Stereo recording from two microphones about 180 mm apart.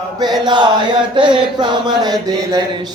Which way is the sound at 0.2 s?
25° right (ahead or behind).